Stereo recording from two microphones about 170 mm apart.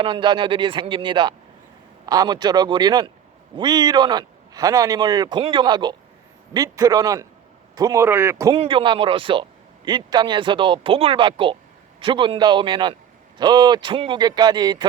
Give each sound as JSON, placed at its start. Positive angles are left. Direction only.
{"t": 0.0, "sound": "speech", "side_deg": -30}
{"t": 8.5, "sound": "speech", "side_deg": -30}